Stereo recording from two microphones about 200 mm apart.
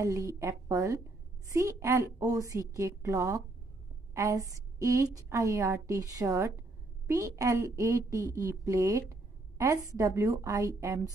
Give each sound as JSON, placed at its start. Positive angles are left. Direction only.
{"t": 0.0, "sound": "a woman's voice", "side_deg": -15}